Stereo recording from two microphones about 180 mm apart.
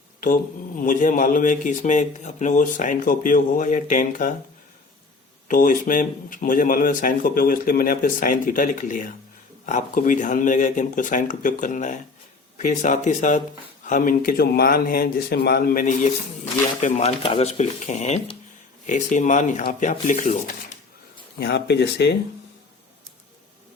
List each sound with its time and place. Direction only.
0.8 s speech: 50° left (ahead or behind)
5.5 s speech: 50° left (ahead or behind)
21.3 s speech: 65° left (ahead or behind)